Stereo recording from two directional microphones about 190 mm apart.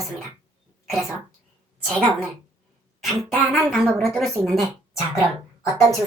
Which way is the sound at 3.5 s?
Centre (ahead or behind).